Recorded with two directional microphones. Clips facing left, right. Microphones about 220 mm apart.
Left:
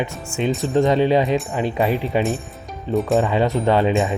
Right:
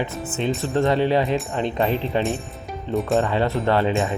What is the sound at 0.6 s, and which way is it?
Speech, 15° left (ahead or behind).